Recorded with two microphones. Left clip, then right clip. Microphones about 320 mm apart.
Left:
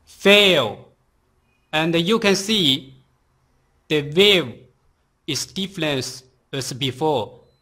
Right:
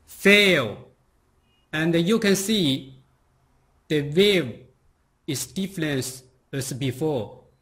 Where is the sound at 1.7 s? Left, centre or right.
Centre.